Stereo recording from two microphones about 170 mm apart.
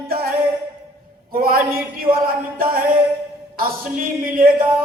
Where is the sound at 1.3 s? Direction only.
60° right (ahead or behind).